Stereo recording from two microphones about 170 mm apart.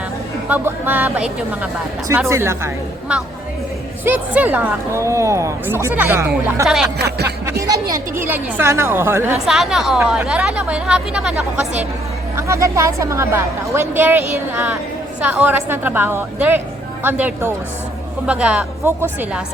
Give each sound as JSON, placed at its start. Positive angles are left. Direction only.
{"t": 0.4, "sound": "a woman's voice", "side_deg": -10}
{"t": 2.3, "sound": "a woman's voice", "side_deg": -15}
{"t": 4.0, "sound": "a woman's voice", "side_deg": -10}
{"t": 7.0, "sound": "music", "side_deg": -70}
{"t": 7.6, "sound": "a woman's voice", "side_deg": -20}
{"t": 9.5, "sound": "speech", "side_deg": -5}
{"t": 12.4, "sound": "a woman's voice", "side_deg": -20}